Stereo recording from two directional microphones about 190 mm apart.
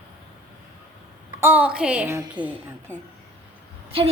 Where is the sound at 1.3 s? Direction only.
10° right (ahead or behind).